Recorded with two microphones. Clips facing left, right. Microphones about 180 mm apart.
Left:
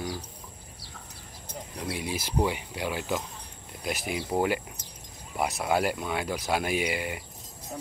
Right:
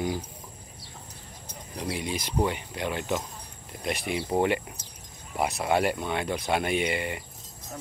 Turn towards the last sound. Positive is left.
turn(degrees=0)  # may be behind; listen again after turning